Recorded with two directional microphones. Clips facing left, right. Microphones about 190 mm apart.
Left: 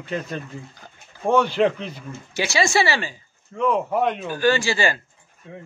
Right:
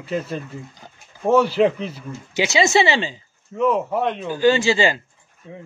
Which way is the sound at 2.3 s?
20° right (ahead or behind).